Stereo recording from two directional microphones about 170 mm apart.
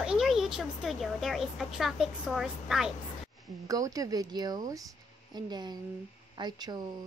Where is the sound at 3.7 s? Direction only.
20° right (ahead or behind).